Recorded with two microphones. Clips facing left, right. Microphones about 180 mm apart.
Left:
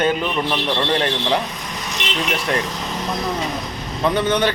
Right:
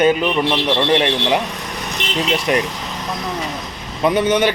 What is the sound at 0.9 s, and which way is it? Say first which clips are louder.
Speech: right 3 dB; 15° right (ahead or behind).